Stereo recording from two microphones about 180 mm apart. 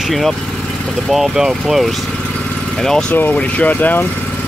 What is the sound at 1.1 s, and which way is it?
Speech, centre (ahead or behind).